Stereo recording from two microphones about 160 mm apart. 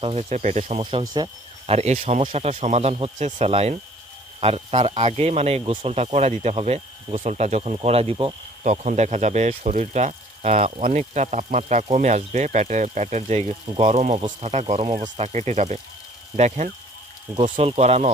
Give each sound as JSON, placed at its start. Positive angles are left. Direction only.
{"t": 0.0, "sound": "speech", "side_deg": -40}
{"t": 0.8, "sound": "speech", "side_deg": -30}
{"t": 1.6, "sound": "speech", "side_deg": -40}
{"t": 14.2, "sound": "speech", "side_deg": -30}
{"t": 14.5, "sound": "speech", "side_deg": -40}
{"t": 15.2, "sound": "speech", "side_deg": -45}
{"t": 17.4, "sound": "speech", "side_deg": -40}